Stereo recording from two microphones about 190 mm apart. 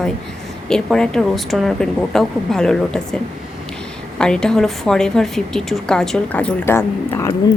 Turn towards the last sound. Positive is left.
turn(degrees=15)  # may be behind; listen again after turning